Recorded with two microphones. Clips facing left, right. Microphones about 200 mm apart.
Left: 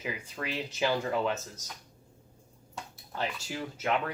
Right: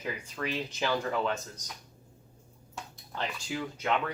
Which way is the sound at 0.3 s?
10° left (ahead or behind).